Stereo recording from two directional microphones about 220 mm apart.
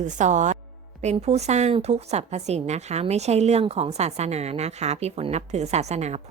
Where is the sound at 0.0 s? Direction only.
35° right (ahead or behind).